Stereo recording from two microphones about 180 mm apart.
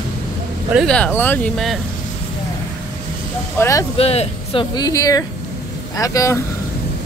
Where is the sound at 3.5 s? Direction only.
15° left (ahead or behind).